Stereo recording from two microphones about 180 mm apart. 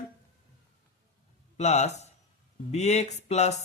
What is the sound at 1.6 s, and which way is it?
Speech, 35° left (ahead or behind).